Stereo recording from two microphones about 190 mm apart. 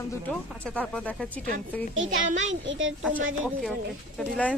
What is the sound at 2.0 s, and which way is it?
Speech, 40° right (ahead or behind).